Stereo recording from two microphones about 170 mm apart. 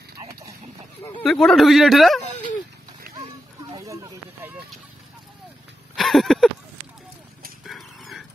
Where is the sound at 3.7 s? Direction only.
20° right (ahead or behind).